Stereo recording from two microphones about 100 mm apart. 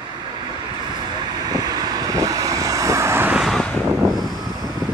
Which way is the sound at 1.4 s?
40° right (ahead or behind).